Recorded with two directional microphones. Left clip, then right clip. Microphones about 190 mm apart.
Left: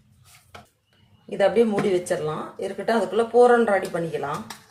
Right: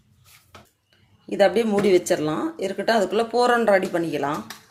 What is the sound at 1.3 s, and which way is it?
Speech, 50° right (ahead or behind).